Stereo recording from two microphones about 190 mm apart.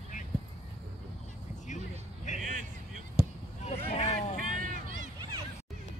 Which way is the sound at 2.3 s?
40° left (ahead or behind).